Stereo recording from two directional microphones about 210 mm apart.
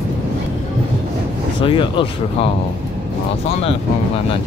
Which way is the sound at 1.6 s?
25° left (ahead or behind).